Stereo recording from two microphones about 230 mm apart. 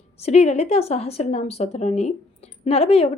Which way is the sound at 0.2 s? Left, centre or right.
Left.